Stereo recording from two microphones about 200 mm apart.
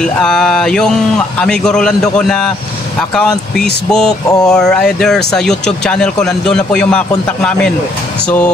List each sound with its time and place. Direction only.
0.0 s speech: 5° left (ahead or behind)